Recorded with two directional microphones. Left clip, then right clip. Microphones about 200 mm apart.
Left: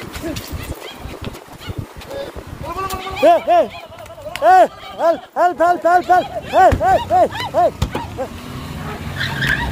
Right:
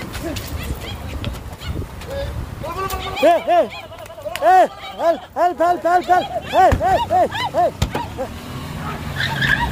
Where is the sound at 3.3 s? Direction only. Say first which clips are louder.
Left 2 dB; 10° left (ahead or behind).